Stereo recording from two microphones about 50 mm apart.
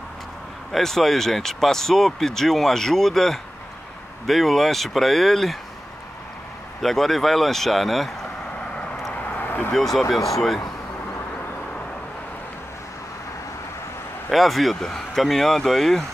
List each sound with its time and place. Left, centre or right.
0.7 s speech: centre
6.8 s speech: centre
9.1 s vehicle: left
9.7 s speech: centre
14.3 s speech: centre